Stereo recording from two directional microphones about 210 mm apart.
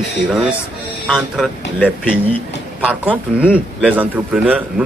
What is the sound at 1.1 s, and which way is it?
Speech, centre (ahead or behind).